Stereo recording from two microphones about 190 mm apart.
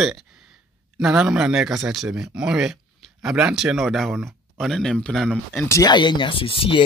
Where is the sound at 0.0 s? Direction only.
Centre (ahead or behind).